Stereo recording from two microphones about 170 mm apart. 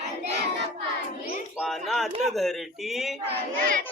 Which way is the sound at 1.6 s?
Centre (ahead or behind).